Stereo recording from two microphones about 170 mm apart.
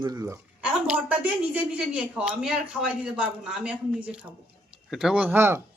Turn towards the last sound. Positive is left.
turn(degrees=-15)  # may be behind; listen again after turning